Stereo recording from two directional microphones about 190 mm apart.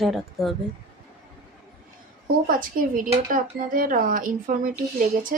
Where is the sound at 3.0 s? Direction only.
45° right (ahead or behind).